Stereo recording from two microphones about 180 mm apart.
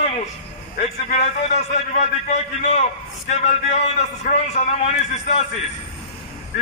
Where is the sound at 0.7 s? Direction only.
40° left (ahead or behind).